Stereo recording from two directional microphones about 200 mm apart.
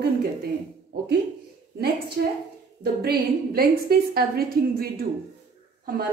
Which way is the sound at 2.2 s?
55° right (ahead or behind).